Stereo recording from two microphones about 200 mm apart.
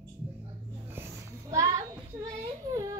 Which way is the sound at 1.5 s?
15° right (ahead or behind).